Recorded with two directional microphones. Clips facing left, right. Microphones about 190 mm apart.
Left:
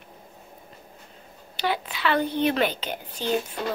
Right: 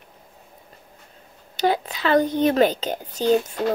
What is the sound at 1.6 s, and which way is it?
A child's voice, 40° right (ahead or behind).